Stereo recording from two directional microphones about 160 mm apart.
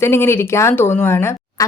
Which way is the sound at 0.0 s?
15° left (ahead or behind).